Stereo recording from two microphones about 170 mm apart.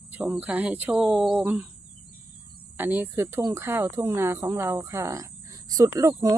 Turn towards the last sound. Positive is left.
turn(degrees=-20)  # may be behind; listen again after turning